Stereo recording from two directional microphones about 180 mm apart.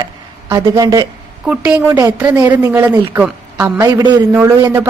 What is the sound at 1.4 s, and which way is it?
A woman's voice, 5° right (ahead or behind).